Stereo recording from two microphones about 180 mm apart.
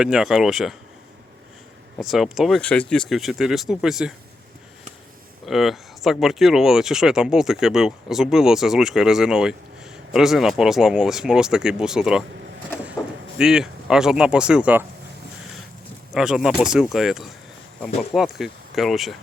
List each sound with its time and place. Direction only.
0.0 s speech: 5° right (ahead or behind)
2.0 s speech: centre (ahead or behind)
5.5 s speech: centre (ahead or behind)
13.4 s speech: 5° right (ahead or behind)
16.1 s speech: 5° right (ahead or behind)